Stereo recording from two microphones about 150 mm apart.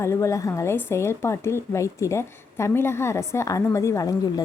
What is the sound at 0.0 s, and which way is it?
A woman's voice, 20° left (ahead or behind).